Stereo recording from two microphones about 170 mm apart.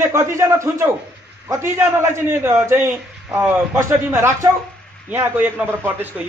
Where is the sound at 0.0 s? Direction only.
15° right (ahead or behind).